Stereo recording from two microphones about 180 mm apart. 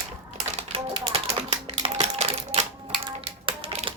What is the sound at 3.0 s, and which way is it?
Music, 30° right (ahead or behind).